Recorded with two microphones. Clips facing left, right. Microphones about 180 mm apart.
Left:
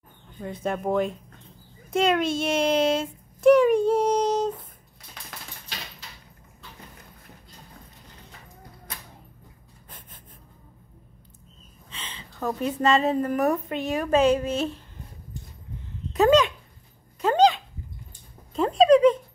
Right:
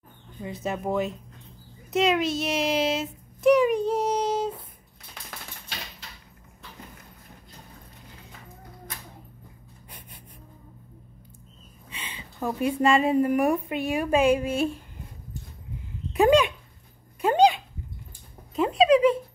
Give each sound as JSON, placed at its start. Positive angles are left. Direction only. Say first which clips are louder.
{"t": 0.4, "sound": "a child's voice", "louder": "left 2 dB", "side_deg": -5}
{"t": 9.8, "sound": "gasp", "louder": "even", "side_deg": -15}
{"t": 11.9, "sound": "a woman's voice", "louder": "right 1 dB", "side_deg": -15}
{"t": 16.1, "sound": "a sound", "louder": "left 1 dB", "side_deg": -15}
{"t": 17.2, "sound": "dog", "louder": "even", "side_deg": -15}
{"t": 18.5, "sound": "a sound", "louder": "left 2 dB", "side_deg": 0}